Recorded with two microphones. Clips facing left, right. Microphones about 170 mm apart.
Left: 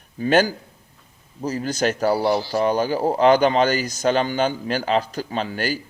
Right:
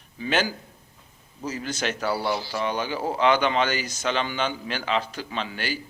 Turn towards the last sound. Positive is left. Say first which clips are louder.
# left 6 dB
turn(degrees=40)  # may be behind; listen again after turning